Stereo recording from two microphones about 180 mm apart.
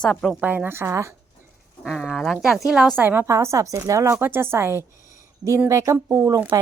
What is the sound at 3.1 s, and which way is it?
A woman's voice, 15° right (ahead or behind).